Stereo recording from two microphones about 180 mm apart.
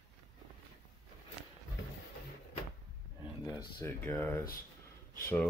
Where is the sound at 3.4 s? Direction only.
15° left (ahead or behind).